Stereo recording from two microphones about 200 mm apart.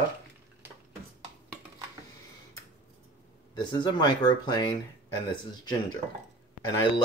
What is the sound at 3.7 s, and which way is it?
Speech, 20° left (ahead or behind).